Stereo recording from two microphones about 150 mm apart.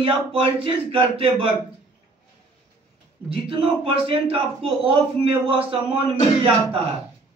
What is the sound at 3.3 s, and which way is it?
Speech, 35° right (ahead or behind).